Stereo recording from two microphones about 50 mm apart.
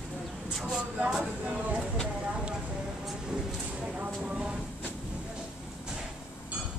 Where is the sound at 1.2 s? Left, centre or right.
Right.